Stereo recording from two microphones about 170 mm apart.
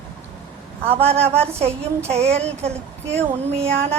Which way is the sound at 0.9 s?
35° right (ahead or behind).